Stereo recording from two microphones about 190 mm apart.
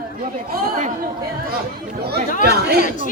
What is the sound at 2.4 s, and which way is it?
Speech, 55° right (ahead or behind).